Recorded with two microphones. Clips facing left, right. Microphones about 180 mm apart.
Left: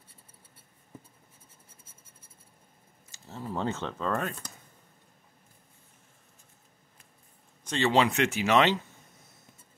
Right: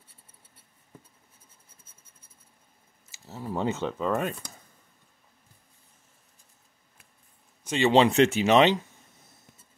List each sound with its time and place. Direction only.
3.1 s speech: 5° right (ahead or behind)
7.6 s a man's voice: 10° right (ahead or behind)
7.9 s speech: 25° right (ahead or behind)